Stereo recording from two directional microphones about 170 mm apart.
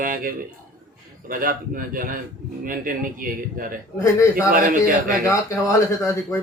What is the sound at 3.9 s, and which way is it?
Speech, 15° left (ahead or behind).